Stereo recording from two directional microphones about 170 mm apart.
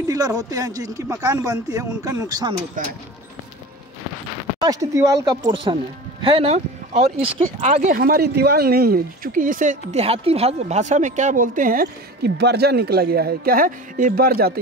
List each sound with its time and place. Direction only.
0.1 s a man's voice: 20° right (ahead or behind)
4.6 s a man's voice: 20° right (ahead or behind); by 8.0 s 45° right (ahead or behind)
8.0 s speech: 65° right (ahead or behind)